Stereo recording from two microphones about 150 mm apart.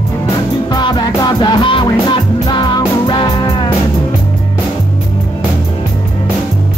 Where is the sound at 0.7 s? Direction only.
25° left (ahead or behind).